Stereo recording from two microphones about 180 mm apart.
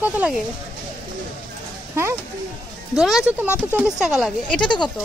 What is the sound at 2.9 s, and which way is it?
A woman's voice, 5° right (ahead or behind).